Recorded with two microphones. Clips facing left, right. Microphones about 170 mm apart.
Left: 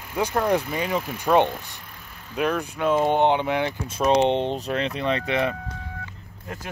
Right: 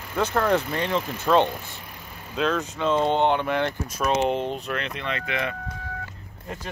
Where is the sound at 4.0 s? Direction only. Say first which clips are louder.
Left 4 dB; 30° left (ahead or behind).